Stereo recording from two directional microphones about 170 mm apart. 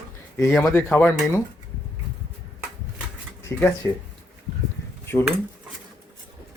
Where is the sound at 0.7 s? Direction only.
15° left (ahead or behind).